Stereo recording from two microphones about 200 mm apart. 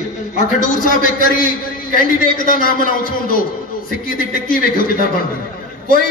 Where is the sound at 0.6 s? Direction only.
40° left (ahead or behind).